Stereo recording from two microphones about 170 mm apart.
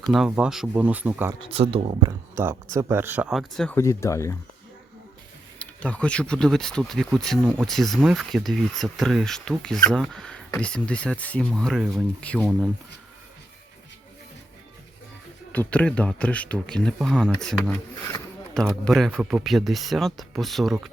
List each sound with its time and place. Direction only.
0.0 s speech: centre (ahead or behind)
1.4 s speech: 35° right (ahead or behind)
2.0 s speech: 15° right (ahead or behind); by 3.8 s centre (ahead or behind)
3.8 s speech: 15° left (ahead or behind)
5.5 s speech: 10° left (ahead or behind)
15.5 s speech: 10° left (ahead or behind)